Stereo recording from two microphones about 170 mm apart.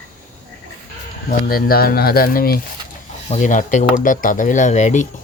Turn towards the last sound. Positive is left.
turn(degrees=45)  # may be behind; listen again after turning